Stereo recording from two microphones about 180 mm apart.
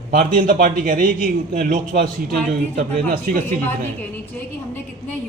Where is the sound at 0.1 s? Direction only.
50° right (ahead or behind).